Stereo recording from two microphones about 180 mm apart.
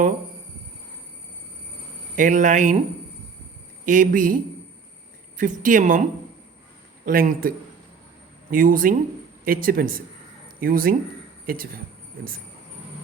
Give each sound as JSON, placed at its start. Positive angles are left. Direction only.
{"t": 2.1, "sound": "a woman's voice", "side_deg": -45}
{"t": 3.8, "sound": "a woman's voice", "side_deg": -45}
{"t": 5.4, "sound": "a woman's voice", "side_deg": -45}